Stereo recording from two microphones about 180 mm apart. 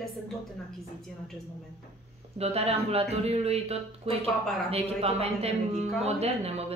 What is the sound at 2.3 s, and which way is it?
Speech, 35° right (ahead or behind).